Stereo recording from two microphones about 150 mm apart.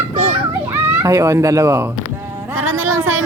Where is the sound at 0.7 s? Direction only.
20° right (ahead or behind).